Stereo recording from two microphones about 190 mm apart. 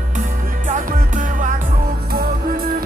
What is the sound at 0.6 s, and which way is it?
Music, 40° right (ahead or behind).